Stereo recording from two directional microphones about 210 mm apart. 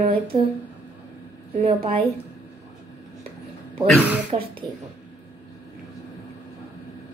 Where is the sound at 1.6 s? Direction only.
25° right (ahead or behind).